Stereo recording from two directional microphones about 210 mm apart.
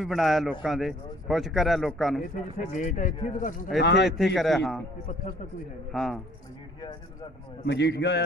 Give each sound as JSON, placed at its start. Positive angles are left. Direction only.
{"t": 0.0, "sound": "a man's voice", "side_deg": 0}
{"t": 2.5, "sound": "speech", "side_deg": 35}
{"t": 3.8, "sound": "a man's voice", "side_deg": 55}
{"t": 4.4, "sound": "a man's voice", "side_deg": 0}
{"t": 5.9, "sound": "a man's voice", "side_deg": 0}
{"t": 7.6, "sound": "a man's voice", "side_deg": 55}